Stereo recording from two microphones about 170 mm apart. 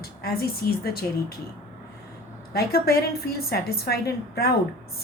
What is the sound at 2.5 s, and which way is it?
A woman's voice, 65° left (ahead or behind).